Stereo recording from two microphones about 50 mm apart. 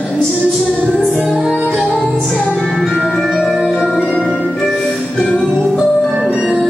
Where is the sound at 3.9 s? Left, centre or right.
Centre.